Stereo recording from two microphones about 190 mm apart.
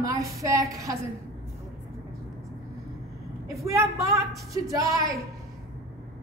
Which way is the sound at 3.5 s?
15° right (ahead or behind).